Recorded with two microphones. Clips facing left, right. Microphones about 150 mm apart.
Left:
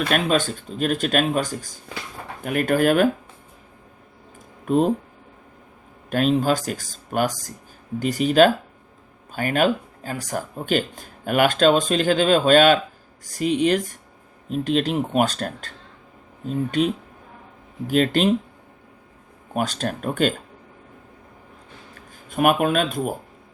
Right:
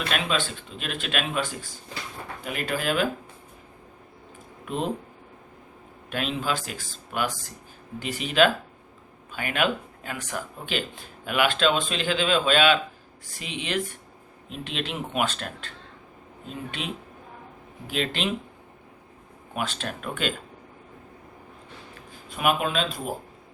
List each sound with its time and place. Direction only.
0.1 s speech: 45° left (ahead or behind)
4.6 s speech: 45° left (ahead or behind)
6.1 s speech: 45° left (ahead or behind)
19.5 s speech: 40° left (ahead or behind)
22.1 s speech: 50° left (ahead or behind)